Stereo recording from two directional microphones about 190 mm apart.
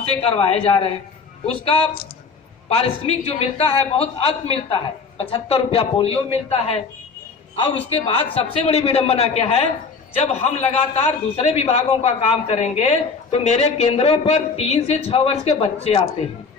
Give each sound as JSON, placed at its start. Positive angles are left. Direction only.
{"t": 0.2, "sound": "speech", "side_deg": 30}
{"t": 7.9, "sound": "speech", "side_deg": 30}